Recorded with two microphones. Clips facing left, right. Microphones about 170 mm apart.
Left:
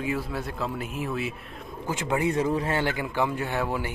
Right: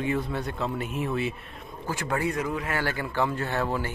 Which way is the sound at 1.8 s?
20° left (ahead or behind).